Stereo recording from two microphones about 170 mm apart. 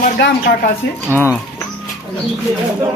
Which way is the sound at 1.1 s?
15° left (ahead or behind).